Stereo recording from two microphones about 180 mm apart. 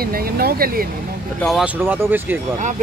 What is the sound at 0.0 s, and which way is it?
Speech, 55° right (ahead or behind).